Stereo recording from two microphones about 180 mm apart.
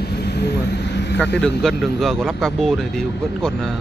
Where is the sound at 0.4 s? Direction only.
65° left (ahead or behind).